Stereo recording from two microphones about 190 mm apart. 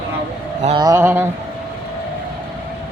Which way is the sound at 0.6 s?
25° right (ahead or behind).